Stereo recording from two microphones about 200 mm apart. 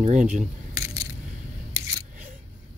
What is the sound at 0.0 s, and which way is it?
Speech, 35° right (ahead or behind).